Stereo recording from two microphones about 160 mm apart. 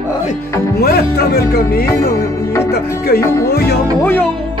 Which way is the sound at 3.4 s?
80° left.